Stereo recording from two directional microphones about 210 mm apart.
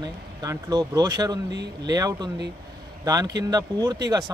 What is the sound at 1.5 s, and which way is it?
Speech, 55° right (ahead or behind).